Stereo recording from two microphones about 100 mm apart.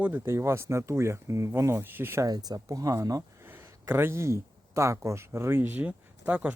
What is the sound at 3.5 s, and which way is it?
Speech, 25° right (ahead or behind).